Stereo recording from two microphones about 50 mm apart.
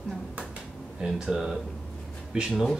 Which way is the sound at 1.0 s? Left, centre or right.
Centre.